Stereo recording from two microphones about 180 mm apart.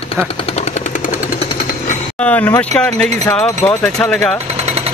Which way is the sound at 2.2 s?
10° left (ahead or behind).